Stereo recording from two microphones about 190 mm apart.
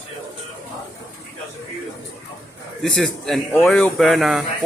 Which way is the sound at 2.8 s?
5° left (ahead or behind).